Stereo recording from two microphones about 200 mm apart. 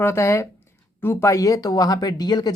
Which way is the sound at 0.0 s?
10° left (ahead or behind).